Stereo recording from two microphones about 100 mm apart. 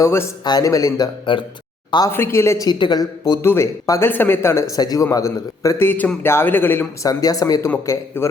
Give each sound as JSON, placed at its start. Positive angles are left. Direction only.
{"t": 0.0, "sound": "a man's voice", "side_deg": 25}
{"t": 0.4, "sound": "a man's voice", "side_deg": 40}
{"t": 1.2, "sound": "speech", "side_deg": 55}
{"t": 2.0, "sound": "a man's voice", "side_deg": 25}
{"t": 2.6, "sound": "speech", "side_deg": 50}
{"t": 3.4, "sound": "a man's voice", "side_deg": 25}
{"t": 4.1, "sound": "a man's voice", "side_deg": 20}
{"t": 7.0, "sound": "a man's voice", "side_deg": 35}